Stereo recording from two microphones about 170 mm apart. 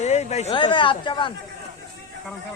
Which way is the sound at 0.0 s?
40° left (ahead or behind).